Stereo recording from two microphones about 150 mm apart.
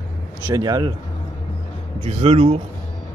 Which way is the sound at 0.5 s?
25° right (ahead or behind).